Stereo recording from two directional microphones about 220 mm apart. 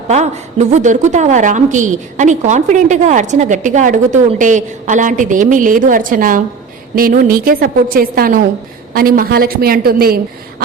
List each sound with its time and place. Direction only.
0.1 s a woman's voice: 30° right (ahead or behind)